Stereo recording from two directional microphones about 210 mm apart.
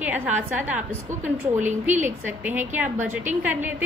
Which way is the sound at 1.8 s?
10° right (ahead or behind).